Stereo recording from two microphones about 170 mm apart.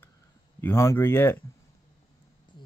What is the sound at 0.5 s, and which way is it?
Speech, 15° left (ahead or behind).